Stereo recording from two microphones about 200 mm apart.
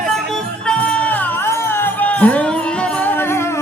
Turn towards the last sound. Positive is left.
turn(degrees=10)  # may be behind; listen again after turning